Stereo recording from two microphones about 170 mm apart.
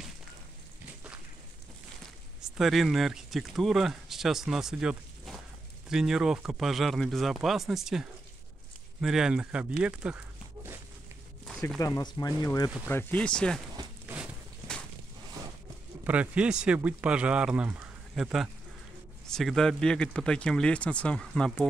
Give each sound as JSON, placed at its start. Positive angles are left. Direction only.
{"t": 2.4, "sound": "speech", "side_deg": 0}
{"t": 11.8, "sound": "speech", "side_deg": 20}
{"t": 12.8, "sound": "speech", "side_deg": 10}
{"t": 14.0, "sound": "a sound", "side_deg": -5}
{"t": 16.0, "sound": "speech", "side_deg": -10}